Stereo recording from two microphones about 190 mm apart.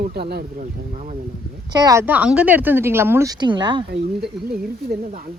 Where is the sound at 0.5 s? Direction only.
40° right (ahead or behind).